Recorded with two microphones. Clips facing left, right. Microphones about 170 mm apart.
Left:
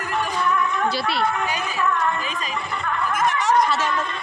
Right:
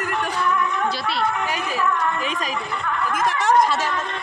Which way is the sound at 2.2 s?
85° right.